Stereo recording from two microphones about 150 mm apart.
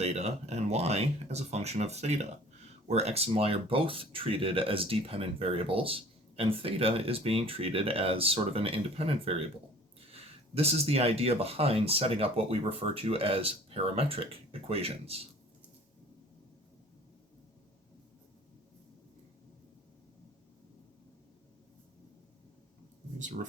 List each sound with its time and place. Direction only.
0.0 s speech: 45° right (ahead or behind)
23.1 s speech: 55° right (ahead or behind)